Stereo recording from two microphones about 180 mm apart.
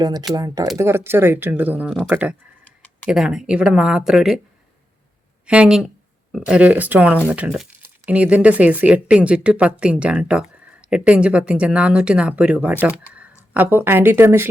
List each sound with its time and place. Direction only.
0.0 s speech: 20° right (ahead or behind)
2.6 s tick-tock: 10° left (ahead or behind)
3.1 s speech: 5° right (ahead or behind)
5.5 s speech: 5° right (ahead or behind)